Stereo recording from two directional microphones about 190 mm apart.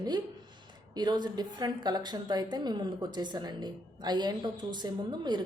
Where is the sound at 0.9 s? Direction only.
20° right (ahead or behind).